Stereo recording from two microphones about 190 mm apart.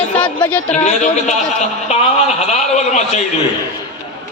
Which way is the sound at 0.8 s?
40° left (ahead or behind).